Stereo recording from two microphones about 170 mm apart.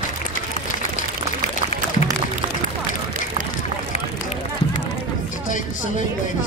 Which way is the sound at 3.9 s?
40° left (ahead or behind).